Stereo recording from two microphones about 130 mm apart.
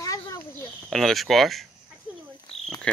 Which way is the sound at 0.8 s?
Centre (ahead or behind).